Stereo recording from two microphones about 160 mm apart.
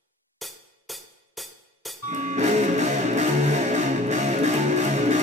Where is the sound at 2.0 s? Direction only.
45° right (ahead or behind).